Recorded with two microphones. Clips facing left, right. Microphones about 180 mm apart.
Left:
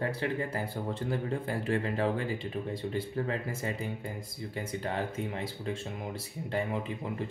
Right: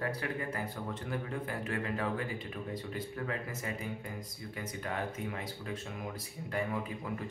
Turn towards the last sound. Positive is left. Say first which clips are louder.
# left 3 dB
turn(degrees=25)  # may be behind; listen again after turning